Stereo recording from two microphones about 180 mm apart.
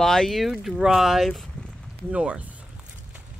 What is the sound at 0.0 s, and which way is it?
Speech, centre (ahead or behind).